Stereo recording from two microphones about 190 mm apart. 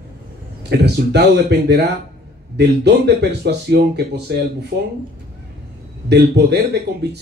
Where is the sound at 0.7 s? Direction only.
60° right (ahead or behind).